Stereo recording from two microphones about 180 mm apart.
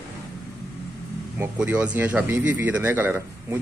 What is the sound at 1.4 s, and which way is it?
Speech, 10° right (ahead or behind).